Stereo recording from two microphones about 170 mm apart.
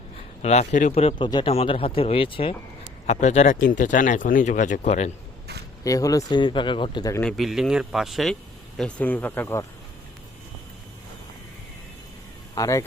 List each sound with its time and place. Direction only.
0.4 s speech: 45° left (ahead or behind)
3.1 s speech: 45° left (ahead or behind)
5.8 s speech: 20° left (ahead or behind)
7.1 s speech: 5° left (ahead or behind)
12.5 s speech: 20° left (ahead or behind)